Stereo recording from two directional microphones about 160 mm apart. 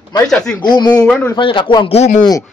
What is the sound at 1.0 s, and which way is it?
Speech, 5° left (ahead or behind).